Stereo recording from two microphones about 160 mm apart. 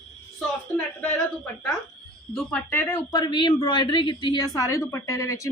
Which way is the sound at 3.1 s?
30° left (ahead or behind).